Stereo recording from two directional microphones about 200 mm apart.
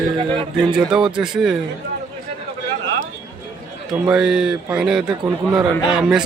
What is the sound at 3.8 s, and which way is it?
A man's voice, 5° right (ahead or behind).